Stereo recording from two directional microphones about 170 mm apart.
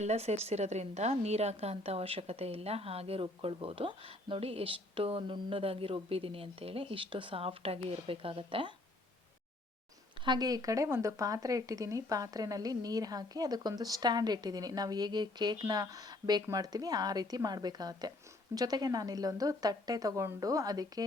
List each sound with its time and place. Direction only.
0.0 s a woman's voice: 40° right (ahead or behind)
10.2 s speech: 25° right (ahead or behind)